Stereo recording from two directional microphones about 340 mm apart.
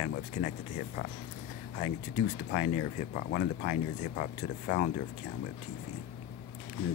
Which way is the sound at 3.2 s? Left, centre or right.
Left.